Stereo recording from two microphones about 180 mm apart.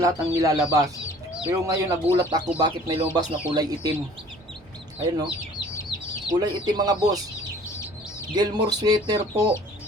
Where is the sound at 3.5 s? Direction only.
25° right (ahead or behind).